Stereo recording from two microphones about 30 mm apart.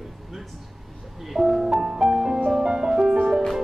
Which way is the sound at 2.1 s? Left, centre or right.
Right.